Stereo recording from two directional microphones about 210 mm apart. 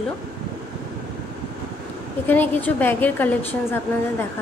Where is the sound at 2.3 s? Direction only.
10° left (ahead or behind).